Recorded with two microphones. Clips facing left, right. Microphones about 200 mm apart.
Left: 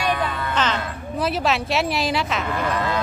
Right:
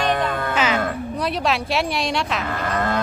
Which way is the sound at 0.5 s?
10° right (ahead or behind).